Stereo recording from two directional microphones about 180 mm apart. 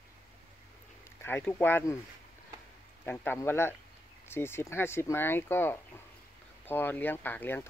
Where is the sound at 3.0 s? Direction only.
10° left (ahead or behind).